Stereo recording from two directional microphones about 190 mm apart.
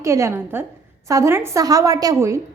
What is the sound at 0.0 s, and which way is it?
A woman's voice, 15° right (ahead or behind).